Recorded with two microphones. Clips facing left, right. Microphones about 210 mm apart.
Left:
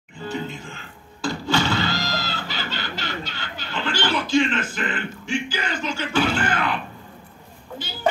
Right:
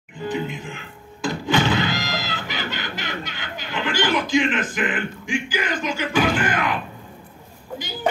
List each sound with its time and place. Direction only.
0.2 s music: 15° right (ahead or behind)
1.2 s fowl: 20° right (ahead or behind)